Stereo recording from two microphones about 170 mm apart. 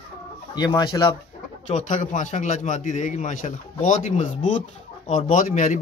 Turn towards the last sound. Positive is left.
turn(degrees=50)  # may be behind; listen again after turning